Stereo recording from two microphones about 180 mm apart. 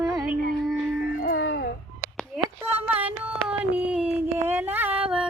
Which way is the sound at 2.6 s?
10° right (ahead or behind).